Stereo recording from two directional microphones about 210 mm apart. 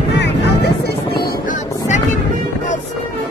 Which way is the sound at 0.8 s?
50° left (ahead or behind).